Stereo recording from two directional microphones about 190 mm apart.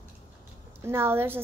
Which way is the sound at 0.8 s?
10° right (ahead or behind).